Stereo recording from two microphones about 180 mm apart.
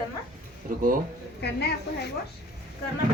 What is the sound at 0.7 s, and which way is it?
Speech, 50° right (ahead or behind).